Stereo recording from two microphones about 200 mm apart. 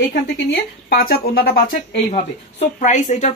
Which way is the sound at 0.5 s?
45° left (ahead or behind).